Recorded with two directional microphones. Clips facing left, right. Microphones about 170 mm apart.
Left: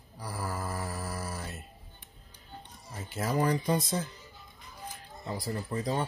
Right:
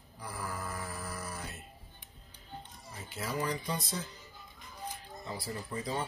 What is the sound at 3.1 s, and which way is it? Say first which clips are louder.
Speech: left 7 dB; 45° left (ahead or behind).